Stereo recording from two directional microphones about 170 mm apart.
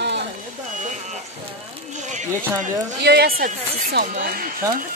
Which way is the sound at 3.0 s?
65° right (ahead or behind).